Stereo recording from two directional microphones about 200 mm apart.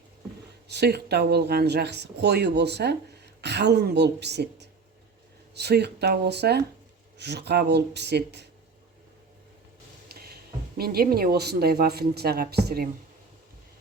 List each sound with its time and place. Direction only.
0.7 s speech: 55° right (ahead or behind)
10.1 s a sound: 50° right (ahead or behind)
10.8 s speech: 50° right (ahead or behind)